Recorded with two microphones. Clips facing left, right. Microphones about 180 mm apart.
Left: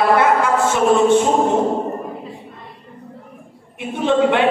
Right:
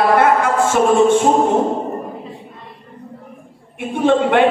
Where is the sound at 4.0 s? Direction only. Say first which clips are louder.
Right 2 dB; 55° right (ahead or behind).